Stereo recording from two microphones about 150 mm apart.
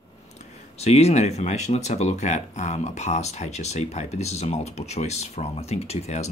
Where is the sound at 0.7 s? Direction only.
45° left (ahead or behind).